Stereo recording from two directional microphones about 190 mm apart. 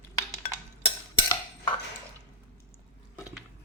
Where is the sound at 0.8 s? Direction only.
25° left (ahead or behind).